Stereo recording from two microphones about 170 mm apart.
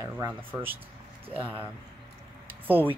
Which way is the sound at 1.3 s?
35° right (ahead or behind).